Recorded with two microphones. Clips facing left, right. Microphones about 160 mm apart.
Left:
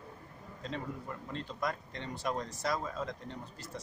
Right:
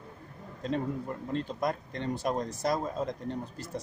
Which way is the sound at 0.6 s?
45° right (ahead or behind).